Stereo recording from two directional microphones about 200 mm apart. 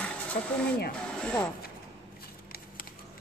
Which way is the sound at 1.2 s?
5° left (ahead or behind).